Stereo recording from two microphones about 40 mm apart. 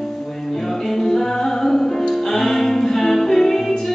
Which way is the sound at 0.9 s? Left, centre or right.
Centre.